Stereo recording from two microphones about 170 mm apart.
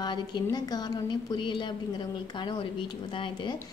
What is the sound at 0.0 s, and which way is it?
A woman's voice, 25° left (ahead or behind).